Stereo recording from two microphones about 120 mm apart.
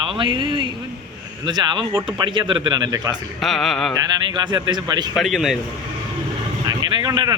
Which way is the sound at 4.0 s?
35° right (ahead or behind).